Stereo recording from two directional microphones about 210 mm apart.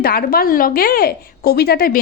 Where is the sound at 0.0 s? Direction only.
45° left (ahead or behind).